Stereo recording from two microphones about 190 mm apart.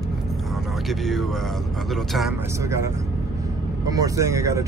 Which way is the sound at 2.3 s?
15° right (ahead or behind).